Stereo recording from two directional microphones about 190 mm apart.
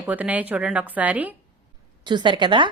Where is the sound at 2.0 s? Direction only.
25° right (ahead or behind).